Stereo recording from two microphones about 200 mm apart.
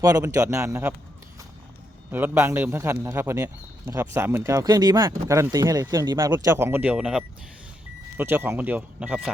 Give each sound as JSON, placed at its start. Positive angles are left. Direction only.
{"t": 0.0, "sound": "speech", "side_deg": -20}
{"t": 2.1, "sound": "speech", "side_deg": -10}